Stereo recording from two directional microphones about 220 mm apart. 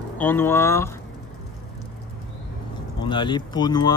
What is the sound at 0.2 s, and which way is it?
Speech, 10° left (ahead or behind).